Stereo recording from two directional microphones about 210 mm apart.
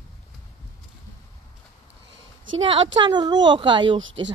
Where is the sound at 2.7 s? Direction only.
20° right (ahead or behind).